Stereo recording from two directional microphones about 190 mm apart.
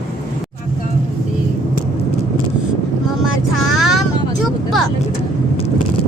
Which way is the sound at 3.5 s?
Centre (ahead or behind).